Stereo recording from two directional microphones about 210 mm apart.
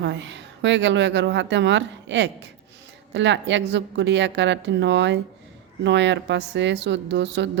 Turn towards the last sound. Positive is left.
turn(degrees=-55)  # may be behind; listen again after turning